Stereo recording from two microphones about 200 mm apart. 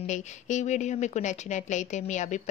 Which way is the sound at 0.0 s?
35° left (ahead or behind).